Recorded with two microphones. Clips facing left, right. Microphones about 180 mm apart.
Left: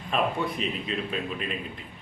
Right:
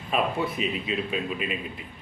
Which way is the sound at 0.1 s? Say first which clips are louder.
Right 1 dB; 5° right (ahead or behind).